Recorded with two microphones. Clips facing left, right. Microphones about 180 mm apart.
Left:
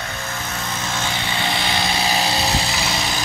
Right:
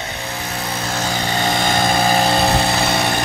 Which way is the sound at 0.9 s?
40° right (ahead or behind).